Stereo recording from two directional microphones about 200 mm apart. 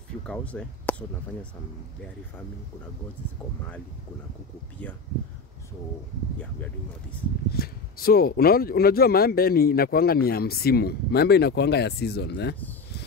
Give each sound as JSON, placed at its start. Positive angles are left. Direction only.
{"t": 0.3, "sound": "speech", "side_deg": 5}
{"t": 7.5, "sound": "speech", "side_deg": 50}